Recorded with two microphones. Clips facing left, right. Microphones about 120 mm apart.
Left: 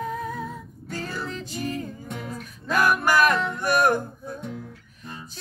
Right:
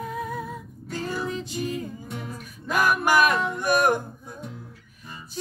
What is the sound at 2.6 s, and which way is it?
Music, 15° right (ahead or behind).